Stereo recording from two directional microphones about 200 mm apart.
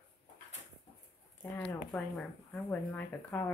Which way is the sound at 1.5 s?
5° left (ahead or behind).